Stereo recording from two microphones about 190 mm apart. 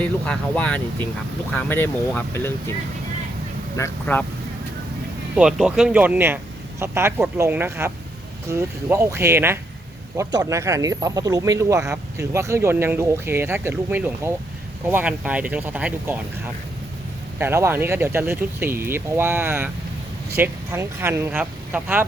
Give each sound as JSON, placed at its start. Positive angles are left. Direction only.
{"t": 0.0, "sound": "speech", "side_deg": 5}
{"t": 3.8, "sound": "speech", "side_deg": 10}
{"t": 5.3, "sound": "speech", "side_deg": -5}
{"t": 17.3, "sound": "speech", "side_deg": -10}